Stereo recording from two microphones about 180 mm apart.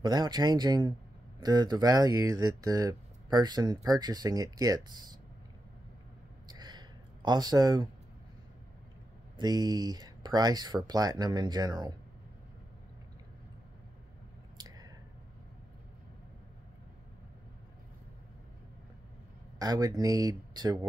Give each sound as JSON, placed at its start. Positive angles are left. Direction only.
{"t": 0.0, "sound": "speech", "side_deg": -25}
{"t": 6.5, "sound": "a sound", "side_deg": -25}
{"t": 9.4, "sound": "speech", "side_deg": -20}
{"t": 14.6, "sound": "squish", "side_deg": -20}
{"t": 19.6, "sound": "speech", "side_deg": -20}